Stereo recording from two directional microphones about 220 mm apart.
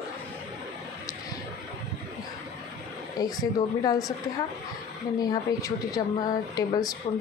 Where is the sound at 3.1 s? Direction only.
15° left (ahead or behind).